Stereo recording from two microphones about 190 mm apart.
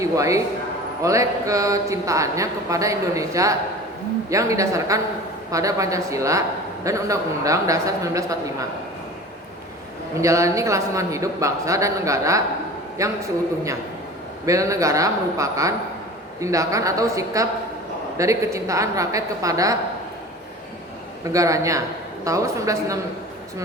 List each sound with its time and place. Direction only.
0.0 s a man's voice: 15° right (ahead or behind)
10.2 s a man's voice: 15° right (ahead or behind)
14.4 s a man's voice: 15° right (ahead or behind)
21.3 s a man's voice: 15° right (ahead or behind)